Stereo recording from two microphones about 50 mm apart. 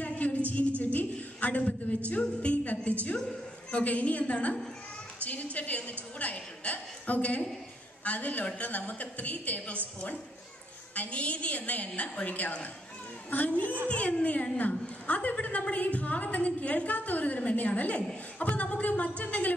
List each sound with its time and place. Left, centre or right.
0.0 s music: left
0.5 s a sound: left
2.0 s a woman's voice: left
11.0 s a woman's voice: left